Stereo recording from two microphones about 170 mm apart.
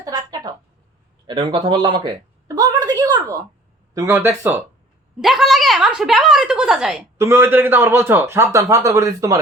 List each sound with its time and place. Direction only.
0.0 s a sound: 20° right (ahead or behind)
1.3 s a man's voice: 30° right (ahead or behind)
2.5 s a sound: 25° right (ahead or behind)
3.9 s a man's voice: 15° right (ahead or behind)
5.2 s a woman's voice: centre (ahead or behind)
7.2 s a man's voice: 15° right (ahead or behind)